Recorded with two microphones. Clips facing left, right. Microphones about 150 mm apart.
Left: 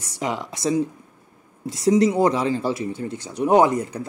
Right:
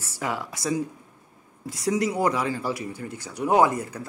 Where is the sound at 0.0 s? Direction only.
20° left (ahead or behind).